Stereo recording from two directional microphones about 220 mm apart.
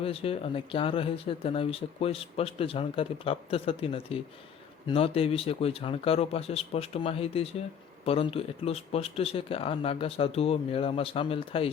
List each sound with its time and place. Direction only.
0.0 s speech: 25° left (ahead or behind)